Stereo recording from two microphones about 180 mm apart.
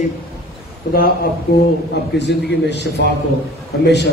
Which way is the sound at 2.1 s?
70° left (ahead or behind).